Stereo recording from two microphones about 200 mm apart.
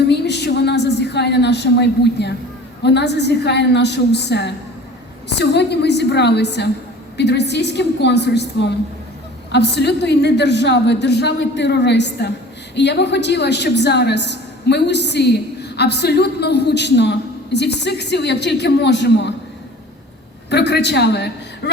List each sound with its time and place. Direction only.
0.1 s a sound: 55° left (ahead or behind)
2.8 s a woman's voice: 60° left (ahead or behind)
20.5 s a woman's voice: 60° left (ahead or behind)